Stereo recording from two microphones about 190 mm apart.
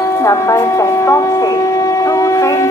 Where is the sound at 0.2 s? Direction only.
15° left (ahead or behind).